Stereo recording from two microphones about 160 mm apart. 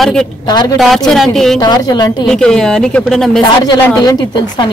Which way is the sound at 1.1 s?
Centre (ahead or behind).